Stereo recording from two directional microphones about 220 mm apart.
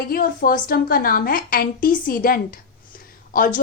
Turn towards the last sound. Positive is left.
turn(degrees=40)  # may be behind; listen again after turning